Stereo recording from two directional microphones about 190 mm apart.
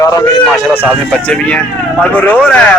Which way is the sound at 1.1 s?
5° left (ahead or behind).